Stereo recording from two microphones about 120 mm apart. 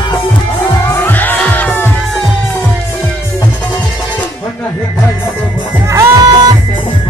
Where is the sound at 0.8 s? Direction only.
15° left (ahead or behind).